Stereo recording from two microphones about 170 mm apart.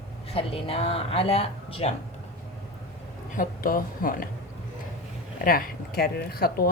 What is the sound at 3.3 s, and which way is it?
Speech, 55° left (ahead or behind).